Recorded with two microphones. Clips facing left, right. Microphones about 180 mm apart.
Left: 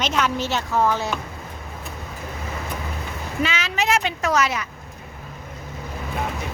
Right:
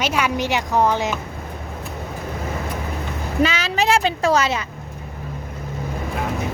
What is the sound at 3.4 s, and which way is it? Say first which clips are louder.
Speech: right 5 dB; 35° right (ahead or behind).